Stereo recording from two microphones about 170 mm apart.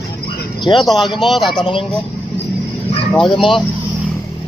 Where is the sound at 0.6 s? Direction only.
25° left (ahead or behind).